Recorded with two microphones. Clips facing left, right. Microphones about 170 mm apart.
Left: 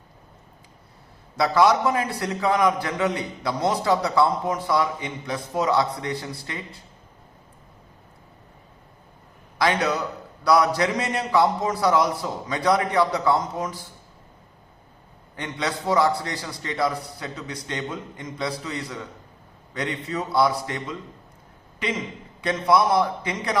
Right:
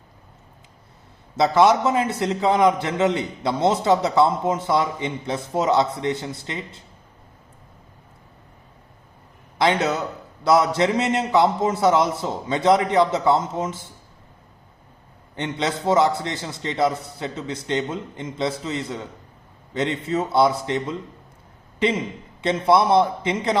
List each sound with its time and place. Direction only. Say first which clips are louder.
1.4 s a man's voice: right 2 dB; 20° right (ahead or behind)
9.6 s a man's voice: right 2 dB; 25° right (ahead or behind)
15.4 s a man's voice: right 3 dB; 25° right (ahead or behind)